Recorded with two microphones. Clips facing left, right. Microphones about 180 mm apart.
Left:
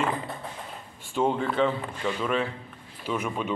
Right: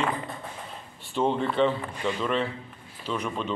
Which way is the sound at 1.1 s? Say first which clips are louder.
Even; centre (ahead or behind).